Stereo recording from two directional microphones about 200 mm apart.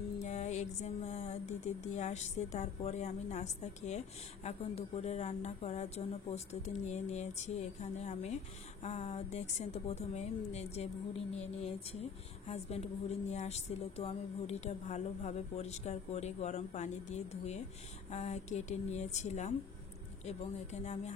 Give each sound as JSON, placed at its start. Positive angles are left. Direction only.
{"t": 0.2, "sound": "speech", "side_deg": 35}